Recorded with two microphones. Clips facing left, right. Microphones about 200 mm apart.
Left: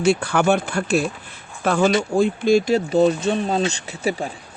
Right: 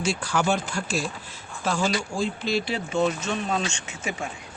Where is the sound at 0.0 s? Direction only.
60° left (ahead or behind); by 4.3 s 35° left (ahead or behind).